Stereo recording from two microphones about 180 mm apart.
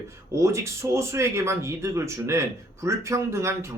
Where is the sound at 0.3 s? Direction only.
15° right (ahead or behind).